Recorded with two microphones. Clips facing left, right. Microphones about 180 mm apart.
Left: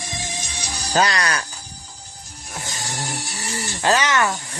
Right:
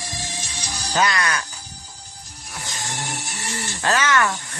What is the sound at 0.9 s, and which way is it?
Speech, 35° left (ahead or behind).